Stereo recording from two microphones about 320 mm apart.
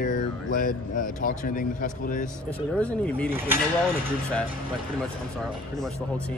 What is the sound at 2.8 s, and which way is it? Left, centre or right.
Speech, centre.